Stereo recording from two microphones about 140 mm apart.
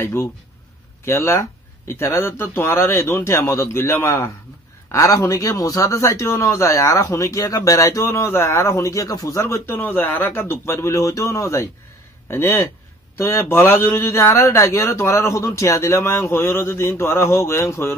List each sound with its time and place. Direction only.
0.0 s a man's voice: 20° left (ahead or behind)